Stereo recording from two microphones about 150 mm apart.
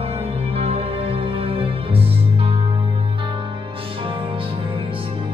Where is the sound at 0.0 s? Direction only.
40° right (ahead or behind).